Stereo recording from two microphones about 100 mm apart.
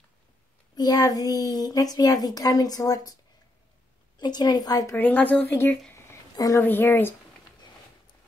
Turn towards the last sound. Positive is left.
turn(degrees=20)  # may be behind; listen again after turning